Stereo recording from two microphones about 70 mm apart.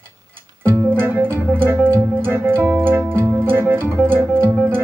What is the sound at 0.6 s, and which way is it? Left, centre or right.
Music, right.